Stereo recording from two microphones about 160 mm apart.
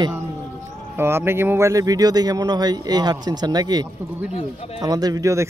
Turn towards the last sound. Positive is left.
turn(degrees=-20)  # may be behind; listen again after turning